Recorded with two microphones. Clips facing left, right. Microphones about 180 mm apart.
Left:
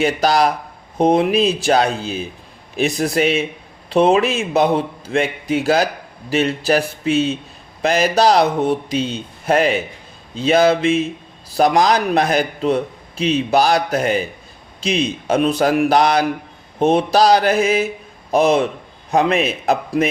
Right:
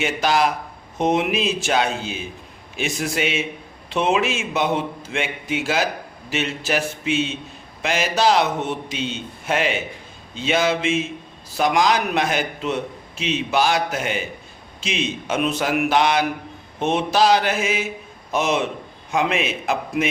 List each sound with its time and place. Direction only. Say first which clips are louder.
0.0 s a man's voice: left 4 dB; 35° left (ahead or behind)